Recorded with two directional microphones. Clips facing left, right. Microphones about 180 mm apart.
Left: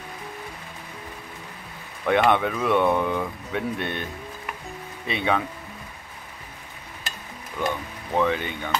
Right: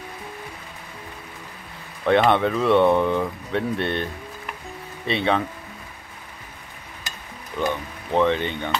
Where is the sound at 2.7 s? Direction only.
20° right (ahead or behind).